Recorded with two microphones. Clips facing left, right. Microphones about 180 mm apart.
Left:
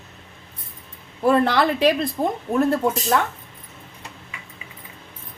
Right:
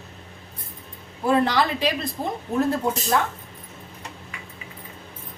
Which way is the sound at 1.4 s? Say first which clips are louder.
Left 4 dB; 55° left (ahead or behind).